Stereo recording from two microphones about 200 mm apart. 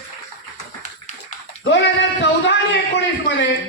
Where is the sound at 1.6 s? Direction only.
60° left (ahead or behind).